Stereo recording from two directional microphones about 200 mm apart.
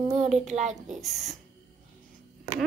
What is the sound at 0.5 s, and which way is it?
Speech, 35° right (ahead or behind).